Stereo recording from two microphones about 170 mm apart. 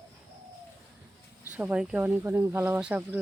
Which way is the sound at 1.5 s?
10° right (ahead or behind).